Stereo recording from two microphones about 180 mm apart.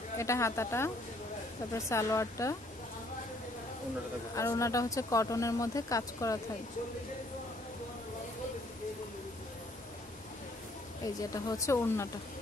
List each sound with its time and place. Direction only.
0.2 s speech: 15° left (ahead or behind)
4.4 s speech: 15° left (ahead or behind)
11.2 s speech: 20° left (ahead or behind)